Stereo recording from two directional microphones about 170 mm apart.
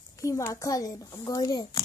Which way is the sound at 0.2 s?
20° left (ahead or behind).